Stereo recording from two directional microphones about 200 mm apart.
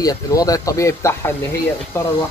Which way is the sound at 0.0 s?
20° left (ahead or behind).